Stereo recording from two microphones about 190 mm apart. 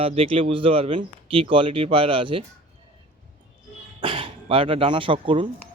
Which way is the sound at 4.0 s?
30° right (ahead or behind).